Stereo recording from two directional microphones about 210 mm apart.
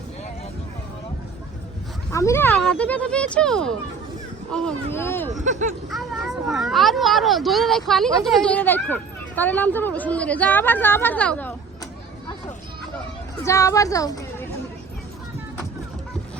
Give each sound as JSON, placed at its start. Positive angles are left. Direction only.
{"t": 2.1, "sound": "speech", "side_deg": 15}
{"t": 5.4, "sound": "speech", "side_deg": -35}
{"t": 5.9, "sound": "speech", "side_deg": 0}
{"t": 13.4, "sound": "speech", "side_deg": 15}